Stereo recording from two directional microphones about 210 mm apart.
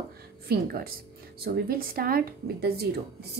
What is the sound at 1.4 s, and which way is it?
A woman's voice, 45° right (ahead or behind).